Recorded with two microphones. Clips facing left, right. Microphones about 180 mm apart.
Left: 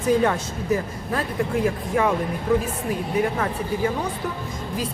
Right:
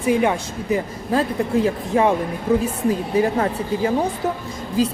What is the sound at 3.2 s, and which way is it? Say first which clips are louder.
Speech: right 4 dB; 30° right (ahead or behind).